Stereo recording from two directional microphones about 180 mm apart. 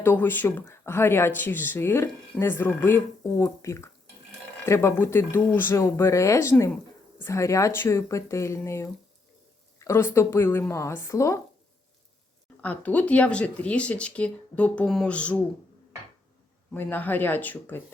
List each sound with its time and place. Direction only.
0.0 s speech: 10° left (ahead or behind)
12.6 s speech: 10° left (ahead or behind)
16.7 s speech: 10° left (ahead or behind)